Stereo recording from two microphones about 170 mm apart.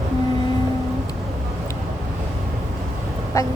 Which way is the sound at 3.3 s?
20° left (ahead or behind).